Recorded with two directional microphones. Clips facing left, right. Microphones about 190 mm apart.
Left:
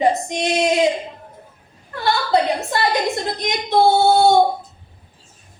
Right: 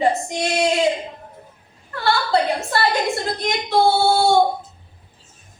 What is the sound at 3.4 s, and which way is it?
Female singing, 20° left (ahead or behind).